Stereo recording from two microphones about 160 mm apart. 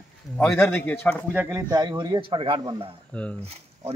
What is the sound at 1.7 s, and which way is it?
A man's voice, 25° right (ahead or behind).